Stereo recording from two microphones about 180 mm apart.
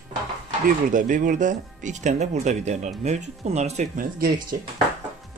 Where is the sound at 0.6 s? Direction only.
50° right (ahead or behind).